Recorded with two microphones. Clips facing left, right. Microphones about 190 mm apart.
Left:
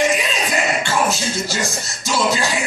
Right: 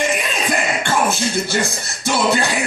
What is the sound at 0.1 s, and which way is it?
Speech, 55° right (ahead or behind).